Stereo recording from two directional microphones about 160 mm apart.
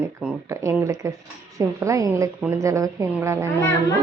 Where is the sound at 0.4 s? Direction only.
20° right (ahead or behind).